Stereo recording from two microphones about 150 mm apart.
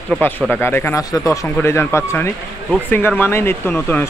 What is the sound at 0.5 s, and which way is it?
Speech, 15° left (ahead or behind).